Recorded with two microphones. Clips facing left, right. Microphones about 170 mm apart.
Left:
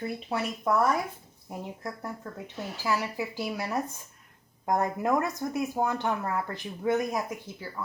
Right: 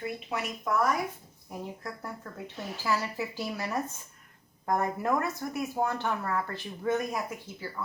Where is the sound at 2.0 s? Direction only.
15° left (ahead or behind).